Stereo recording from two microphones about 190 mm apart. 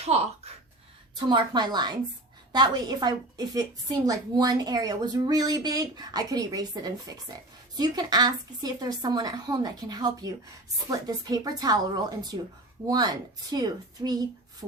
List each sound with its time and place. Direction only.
0.0 s speech: 35° right (ahead or behind)
1.1 s a woman's voice: 20° right (ahead or behind)